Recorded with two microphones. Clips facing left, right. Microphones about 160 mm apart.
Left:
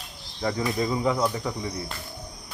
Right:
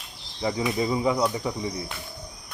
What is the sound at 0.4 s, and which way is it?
Speech, 10° right (ahead or behind).